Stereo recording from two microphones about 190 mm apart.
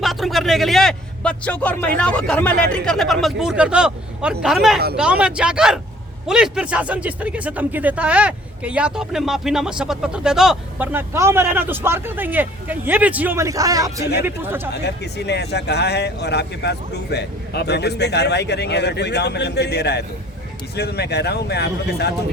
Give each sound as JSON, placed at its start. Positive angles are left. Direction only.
{"t": 0.0, "sound": "a man's voice", "side_deg": 0}
{"t": 14.8, "sound": "speech", "side_deg": 60}